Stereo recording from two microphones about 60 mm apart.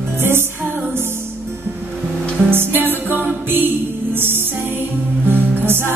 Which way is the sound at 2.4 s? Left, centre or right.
Right.